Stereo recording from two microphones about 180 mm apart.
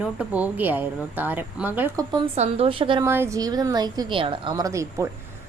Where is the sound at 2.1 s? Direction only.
30° right (ahead or behind).